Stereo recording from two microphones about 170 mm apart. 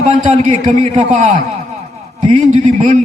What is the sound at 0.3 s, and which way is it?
A man's voice, 40° right (ahead or behind).